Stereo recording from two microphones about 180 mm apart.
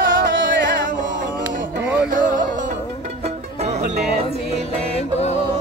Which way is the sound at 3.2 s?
35° right (ahead or behind).